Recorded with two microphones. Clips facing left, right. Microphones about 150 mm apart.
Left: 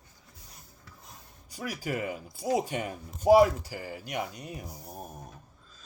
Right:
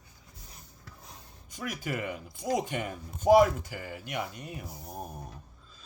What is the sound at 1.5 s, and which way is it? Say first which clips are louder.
Speech: left 1 dB; 35° left (ahead or behind).